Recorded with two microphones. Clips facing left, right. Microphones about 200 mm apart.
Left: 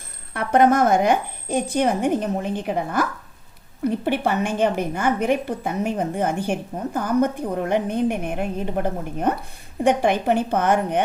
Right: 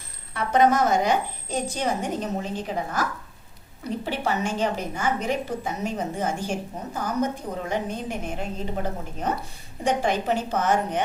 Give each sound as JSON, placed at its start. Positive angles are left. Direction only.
{"t": 0.3, "sound": "a woman's voice", "side_deg": 55}